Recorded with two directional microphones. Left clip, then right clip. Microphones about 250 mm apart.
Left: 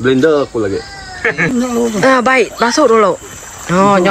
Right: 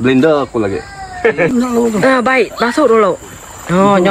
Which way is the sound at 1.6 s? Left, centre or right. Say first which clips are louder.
Right 1 dB; centre.